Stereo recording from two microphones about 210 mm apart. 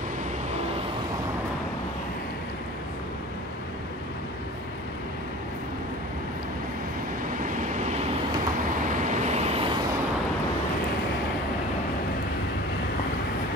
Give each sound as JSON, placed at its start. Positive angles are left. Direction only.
{"t": 7.3, "sound": "vehicle", "side_deg": -35}
{"t": 8.8, "sound": "vehicle", "side_deg": -35}